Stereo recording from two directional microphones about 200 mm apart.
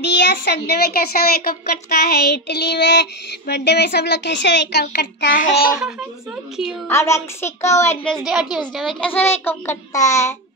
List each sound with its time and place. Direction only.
0.0 s a child's voice: 60° left (ahead or behind)
6.9 s a child's voice: 15° left (ahead or behind)